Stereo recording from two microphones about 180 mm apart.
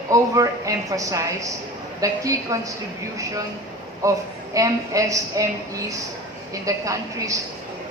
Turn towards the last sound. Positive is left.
turn(degrees=-15)  # may be behind; listen again after turning